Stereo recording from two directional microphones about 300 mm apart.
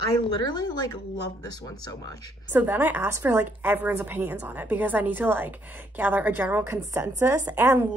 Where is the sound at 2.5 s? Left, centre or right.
Centre.